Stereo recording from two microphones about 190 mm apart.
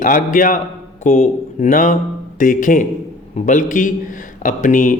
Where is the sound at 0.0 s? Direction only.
45° left (ahead or behind).